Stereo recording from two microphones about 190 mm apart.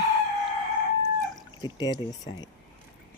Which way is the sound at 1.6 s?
20° left (ahead or behind).